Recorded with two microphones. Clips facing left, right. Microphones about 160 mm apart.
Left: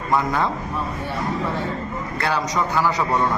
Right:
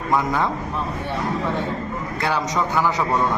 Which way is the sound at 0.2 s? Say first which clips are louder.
Even; 10° right (ahead or behind).